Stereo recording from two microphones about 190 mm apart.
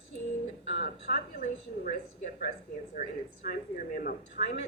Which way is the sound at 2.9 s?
50° left (ahead or behind).